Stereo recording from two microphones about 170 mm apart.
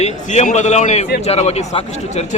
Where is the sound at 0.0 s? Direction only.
45° left (ahead or behind).